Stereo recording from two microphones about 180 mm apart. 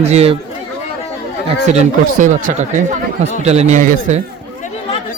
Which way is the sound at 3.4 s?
35° right (ahead or behind).